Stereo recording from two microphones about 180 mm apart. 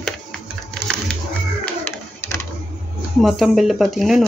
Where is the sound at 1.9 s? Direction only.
15° left (ahead or behind).